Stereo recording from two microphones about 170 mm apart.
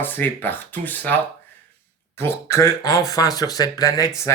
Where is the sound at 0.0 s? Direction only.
10° left (ahead or behind).